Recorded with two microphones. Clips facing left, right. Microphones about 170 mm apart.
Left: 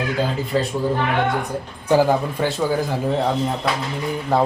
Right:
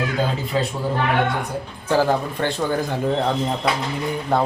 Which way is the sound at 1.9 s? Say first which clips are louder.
Left 2 dB; 15° left (ahead or behind).